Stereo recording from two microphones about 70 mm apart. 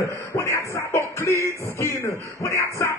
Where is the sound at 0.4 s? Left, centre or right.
Left.